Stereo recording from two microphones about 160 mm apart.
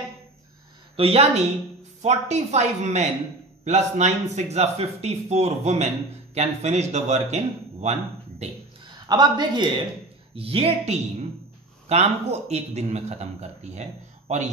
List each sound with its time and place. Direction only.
0.9 s a woman's voice: 40° right (ahead or behind)
8.8 s a man's voice: 25° right (ahead or behind); by 14.4 s 45° right (ahead or behind)